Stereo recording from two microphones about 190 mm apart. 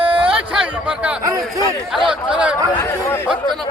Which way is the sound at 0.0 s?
30° right (ahead or behind).